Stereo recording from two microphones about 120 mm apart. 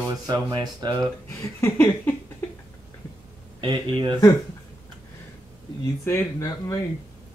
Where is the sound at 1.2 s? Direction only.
20° left (ahead or behind).